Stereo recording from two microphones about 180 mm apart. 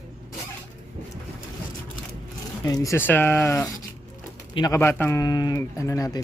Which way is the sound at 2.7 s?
15° left (ahead or behind).